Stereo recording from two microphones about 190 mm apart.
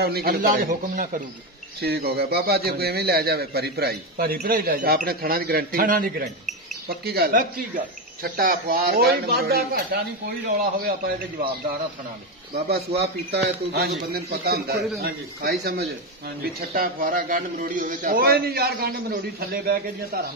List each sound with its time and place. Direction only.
0.0 s a man's voice: 55° right (ahead or behind)
1.8 s a man's voice: 55° right (ahead or behind)
12.6 s a man's voice: 55° right (ahead or behind)